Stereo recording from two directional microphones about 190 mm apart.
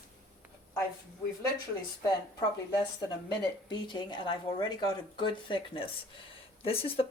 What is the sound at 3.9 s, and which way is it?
Speech, 25° left (ahead or behind).